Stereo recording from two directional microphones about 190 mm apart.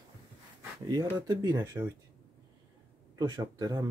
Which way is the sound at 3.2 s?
20° right (ahead or behind).